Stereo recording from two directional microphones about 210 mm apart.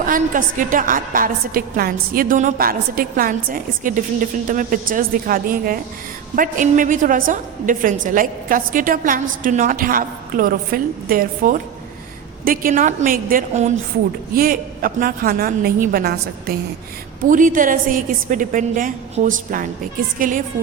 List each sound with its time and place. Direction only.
0.0 s a woman's voice: 40° right (ahead or behind)